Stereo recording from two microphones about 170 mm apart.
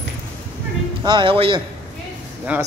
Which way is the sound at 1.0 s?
30° right (ahead or behind).